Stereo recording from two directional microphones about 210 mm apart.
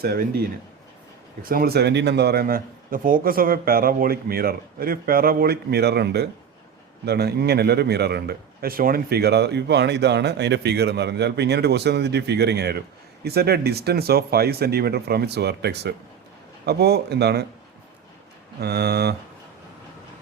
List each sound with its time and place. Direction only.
0.0 s a man's voice: 45° right (ahead or behind)
1.5 s a man's voice: 45° right (ahead or behind)
18.6 s a man's voice: 50° right (ahead or behind)